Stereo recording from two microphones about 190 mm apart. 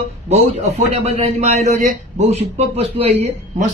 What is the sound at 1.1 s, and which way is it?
A man's voice, 35° right (ahead or behind).